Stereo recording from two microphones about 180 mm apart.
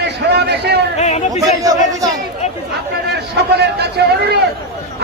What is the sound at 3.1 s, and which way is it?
A man's voice, 65° right (ahead or behind).